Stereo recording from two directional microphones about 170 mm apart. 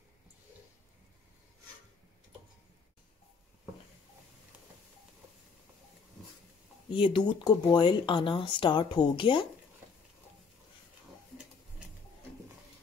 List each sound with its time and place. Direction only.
6.9 s speech: 30° left (ahead or behind)